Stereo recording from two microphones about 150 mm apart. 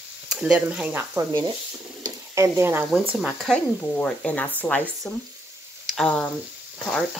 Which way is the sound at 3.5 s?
5° left (ahead or behind).